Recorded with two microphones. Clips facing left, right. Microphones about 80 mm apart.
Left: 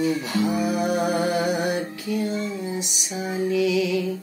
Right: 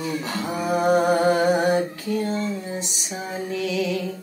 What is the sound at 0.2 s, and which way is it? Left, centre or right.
Music, right.